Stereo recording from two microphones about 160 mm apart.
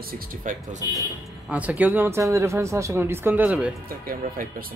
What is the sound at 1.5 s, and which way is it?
Speech, 10° right (ahead or behind).